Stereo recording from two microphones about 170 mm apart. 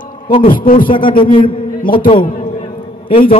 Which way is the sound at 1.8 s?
55° left (ahead or behind).